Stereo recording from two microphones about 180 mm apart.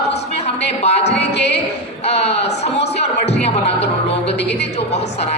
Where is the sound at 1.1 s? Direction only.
70° left (ahead or behind).